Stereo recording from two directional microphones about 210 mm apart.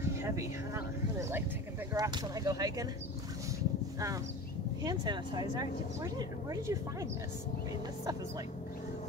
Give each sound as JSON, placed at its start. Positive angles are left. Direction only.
{"t": 0.2, "sound": "a sound", "side_deg": -10}
{"t": 2.0, "sound": "speech", "side_deg": -20}
{"t": 4.8, "sound": "speech", "side_deg": -20}